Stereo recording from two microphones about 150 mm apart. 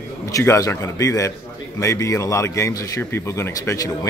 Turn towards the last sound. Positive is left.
turn(degrees=20)  # may be behind; listen again after turning